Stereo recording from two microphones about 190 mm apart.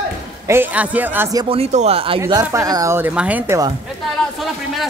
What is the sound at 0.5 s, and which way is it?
Speech, 10° right (ahead or behind).